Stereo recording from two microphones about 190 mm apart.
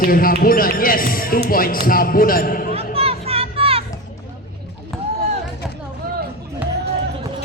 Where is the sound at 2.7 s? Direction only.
30° right (ahead or behind).